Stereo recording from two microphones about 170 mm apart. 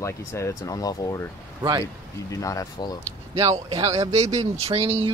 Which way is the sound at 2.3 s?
20° left (ahead or behind).